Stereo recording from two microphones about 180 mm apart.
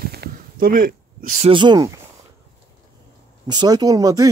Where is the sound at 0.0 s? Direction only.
60° right (ahead or behind).